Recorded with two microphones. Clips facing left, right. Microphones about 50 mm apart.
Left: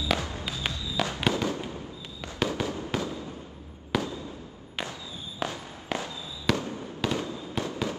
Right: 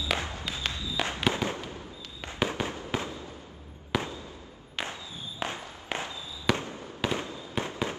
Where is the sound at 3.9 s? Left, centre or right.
Centre.